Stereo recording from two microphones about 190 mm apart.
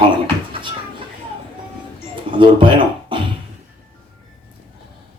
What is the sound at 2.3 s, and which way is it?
Speech, 25° right (ahead or behind).